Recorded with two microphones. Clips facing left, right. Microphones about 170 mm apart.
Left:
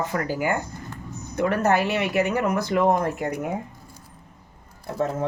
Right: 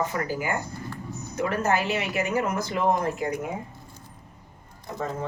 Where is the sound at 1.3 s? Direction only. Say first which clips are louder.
Left 4 dB; 60° left (ahead or behind).